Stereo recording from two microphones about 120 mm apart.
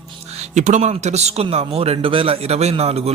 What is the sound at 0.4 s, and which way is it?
A man's voice, 80° right.